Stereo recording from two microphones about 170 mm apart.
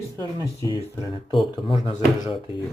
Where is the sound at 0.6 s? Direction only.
25° left (ahead or behind).